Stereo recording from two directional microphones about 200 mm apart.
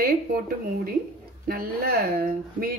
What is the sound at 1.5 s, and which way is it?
A woman's voice, 50° right (ahead or behind).